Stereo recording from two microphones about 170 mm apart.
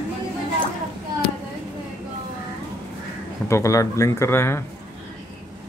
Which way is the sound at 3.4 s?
20° left (ahead or behind).